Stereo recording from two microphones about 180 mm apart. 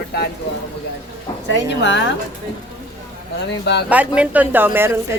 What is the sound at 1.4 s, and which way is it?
Speech, 75° left (ahead or behind).